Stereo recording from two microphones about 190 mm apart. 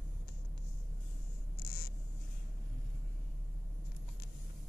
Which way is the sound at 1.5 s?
50° left (ahead or behind).